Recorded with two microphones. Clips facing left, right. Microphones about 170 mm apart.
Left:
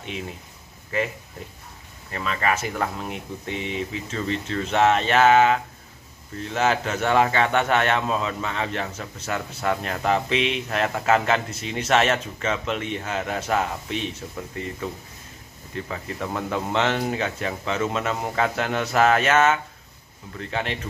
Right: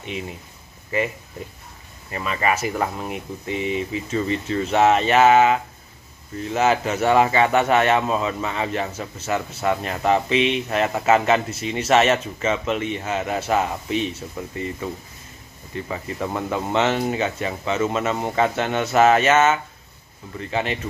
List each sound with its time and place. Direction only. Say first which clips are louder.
0.9 s speech: right 2 dB; 5° right (ahead or behind)